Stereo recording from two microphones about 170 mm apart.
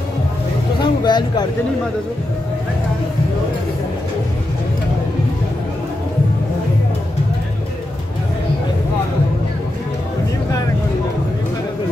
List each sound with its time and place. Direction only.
0.7 s vehicle: 25° left (ahead or behind)